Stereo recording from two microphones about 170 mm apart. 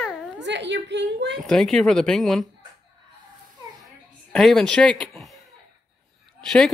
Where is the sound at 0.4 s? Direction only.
90° right.